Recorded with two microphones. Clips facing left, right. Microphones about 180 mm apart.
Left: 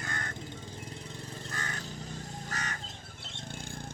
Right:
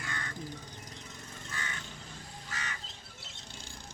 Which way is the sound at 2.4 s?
45° left (ahead or behind).